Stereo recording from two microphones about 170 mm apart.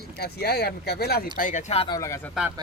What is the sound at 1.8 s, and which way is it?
Speech, 20° left (ahead or behind).